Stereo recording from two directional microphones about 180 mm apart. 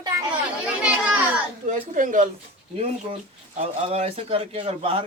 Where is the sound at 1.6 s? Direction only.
45° right (ahead or behind).